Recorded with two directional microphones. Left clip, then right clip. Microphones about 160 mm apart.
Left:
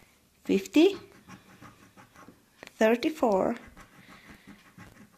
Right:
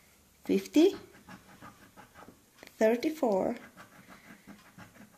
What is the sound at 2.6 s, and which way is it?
Speech, 25° left (ahead or behind).